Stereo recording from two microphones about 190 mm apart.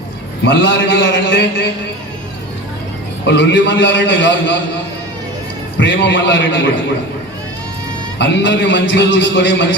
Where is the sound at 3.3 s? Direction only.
70° left (ahead or behind).